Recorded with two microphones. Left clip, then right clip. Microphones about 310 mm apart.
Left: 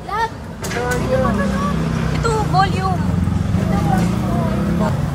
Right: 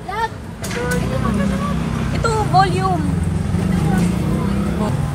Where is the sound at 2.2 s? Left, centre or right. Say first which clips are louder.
Right 2 dB; centre.